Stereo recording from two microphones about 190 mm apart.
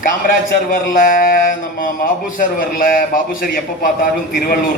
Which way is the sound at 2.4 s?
50° left (ahead or behind).